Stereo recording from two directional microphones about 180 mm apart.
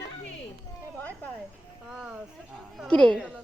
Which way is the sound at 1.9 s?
5° right (ahead or behind).